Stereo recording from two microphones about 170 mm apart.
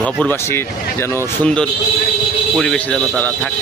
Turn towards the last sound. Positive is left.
turn(degrees=10)  # may be behind; listen again after turning